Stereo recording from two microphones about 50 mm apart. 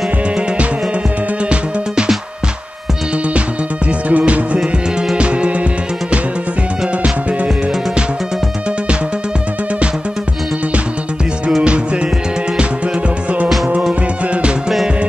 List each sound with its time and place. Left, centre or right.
1.4 s music: right
3.3 s music: right
4.6 s music: centre
7.0 s music: right
11.6 s music: right